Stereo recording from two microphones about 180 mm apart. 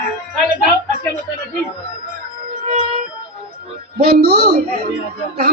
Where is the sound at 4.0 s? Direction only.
55° right (ahead or behind).